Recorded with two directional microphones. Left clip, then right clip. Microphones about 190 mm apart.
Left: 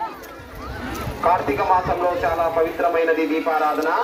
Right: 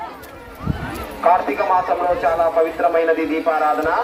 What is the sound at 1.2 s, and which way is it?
A man's voice, 50° left (ahead or behind).